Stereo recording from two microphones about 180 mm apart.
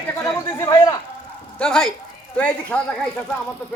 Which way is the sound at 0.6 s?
20° left (ahead or behind).